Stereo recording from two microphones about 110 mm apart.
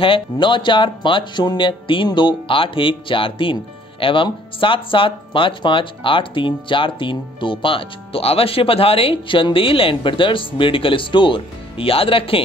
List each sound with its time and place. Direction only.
0.0 s speech: 50° left (ahead or behind)